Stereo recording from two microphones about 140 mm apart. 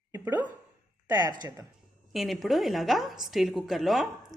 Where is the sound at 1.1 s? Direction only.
30° right (ahead or behind).